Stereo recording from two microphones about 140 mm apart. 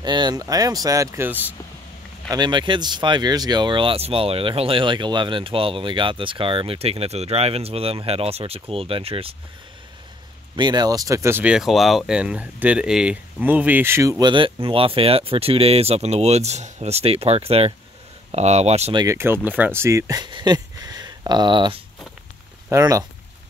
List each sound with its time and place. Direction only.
0.0 s speech: 30° right (ahead or behind); by 1.5 s 15° right (ahead or behind)
2.2 s speech: 30° right (ahead or behind)
10.5 s speech: 30° right (ahead or behind)
11.4 s speech: 5° right (ahead or behind); by 14.3 s 20° right (ahead or behind)
14.3 s speech: 40° right (ahead or behind)
18.9 s speech: 20° right (ahead or behind); by 21.8 s 35° right (ahead or behind)
22.7 s speech: 20° right (ahead or behind)